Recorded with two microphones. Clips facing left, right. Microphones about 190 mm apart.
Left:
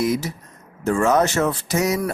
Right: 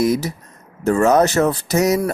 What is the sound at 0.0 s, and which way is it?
Speech, 40° right (ahead or behind).